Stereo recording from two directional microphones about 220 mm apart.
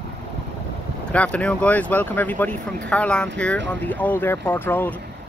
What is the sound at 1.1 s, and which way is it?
Speech, 5° left (ahead or behind).